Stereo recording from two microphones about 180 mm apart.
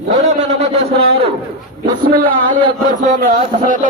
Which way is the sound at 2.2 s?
55° right (ahead or behind).